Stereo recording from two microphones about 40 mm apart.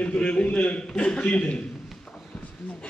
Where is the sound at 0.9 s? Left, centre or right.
Left.